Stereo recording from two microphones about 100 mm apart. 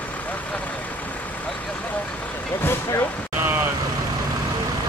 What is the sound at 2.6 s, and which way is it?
Vehicle, 25° left (ahead or behind).